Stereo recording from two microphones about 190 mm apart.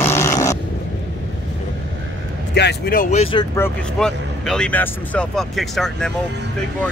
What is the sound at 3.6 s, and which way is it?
Speech, 5° left (ahead or behind).